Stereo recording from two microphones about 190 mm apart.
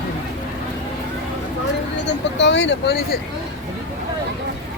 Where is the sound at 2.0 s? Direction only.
70° left (ahead or behind).